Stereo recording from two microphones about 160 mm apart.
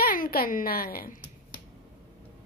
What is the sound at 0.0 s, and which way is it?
A woman's voice, 65° left (ahead or behind).